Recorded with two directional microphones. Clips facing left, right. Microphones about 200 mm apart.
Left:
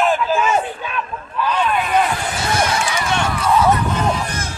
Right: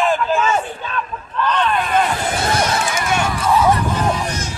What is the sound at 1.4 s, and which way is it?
Vehicle, 5° left (ahead or behind).